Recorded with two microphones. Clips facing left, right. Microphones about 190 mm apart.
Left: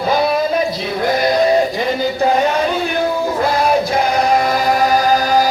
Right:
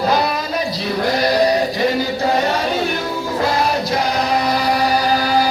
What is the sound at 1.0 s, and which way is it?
Sheep, 50° left (ahead or behind).